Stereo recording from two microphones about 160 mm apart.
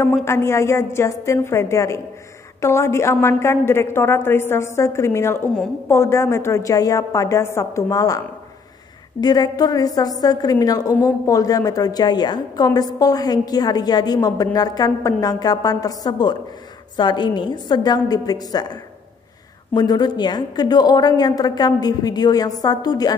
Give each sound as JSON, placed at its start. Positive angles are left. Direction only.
{"t": 0.2, "sound": "a woman's voice", "side_deg": 15}
{"t": 9.2, "sound": "a woman's voice", "side_deg": 25}
{"t": 19.7, "sound": "a woman's voice", "side_deg": 25}